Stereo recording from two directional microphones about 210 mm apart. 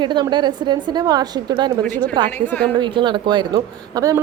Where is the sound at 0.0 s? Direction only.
20° right (ahead or behind).